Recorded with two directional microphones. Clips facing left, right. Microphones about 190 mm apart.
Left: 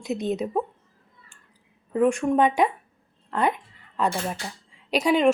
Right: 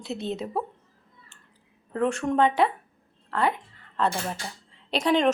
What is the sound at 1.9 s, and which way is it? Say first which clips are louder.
A woman's voice: left 3 dB; 15° left (ahead or behind).